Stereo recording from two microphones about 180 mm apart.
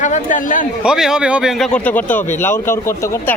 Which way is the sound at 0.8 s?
5° right (ahead or behind).